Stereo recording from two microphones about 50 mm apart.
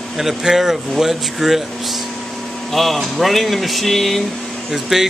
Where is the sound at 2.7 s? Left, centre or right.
Centre.